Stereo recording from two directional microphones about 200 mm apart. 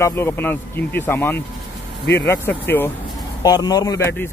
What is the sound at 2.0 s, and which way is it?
Speech, 55° left (ahead or behind).